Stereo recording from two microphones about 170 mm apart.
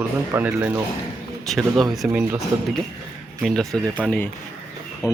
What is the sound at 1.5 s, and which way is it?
Speech, centre (ahead or behind).